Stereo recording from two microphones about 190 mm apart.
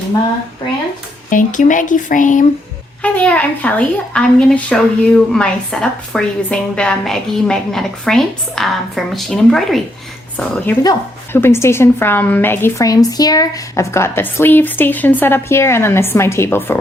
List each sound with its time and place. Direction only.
1.3 s speech: 45° left (ahead or behind)
3.0 s a woman's voice: 5° left (ahead or behind)
10.8 s a woman's voice: 10° left (ahead or behind)